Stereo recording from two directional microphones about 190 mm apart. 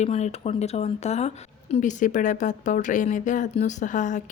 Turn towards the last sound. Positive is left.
turn(degrees=40)  # may be behind; listen again after turning